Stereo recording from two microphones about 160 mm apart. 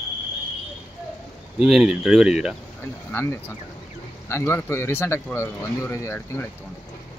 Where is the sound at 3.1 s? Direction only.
15° left (ahead or behind).